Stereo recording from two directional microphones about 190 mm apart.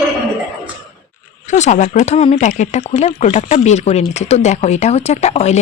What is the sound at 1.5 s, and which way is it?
Speech, 40° left (ahead or behind).